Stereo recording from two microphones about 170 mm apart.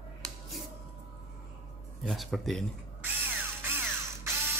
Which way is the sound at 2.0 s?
Centre (ahead or behind).